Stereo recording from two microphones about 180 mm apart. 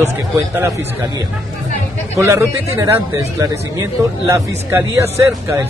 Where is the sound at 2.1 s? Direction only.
15° right (ahead or behind).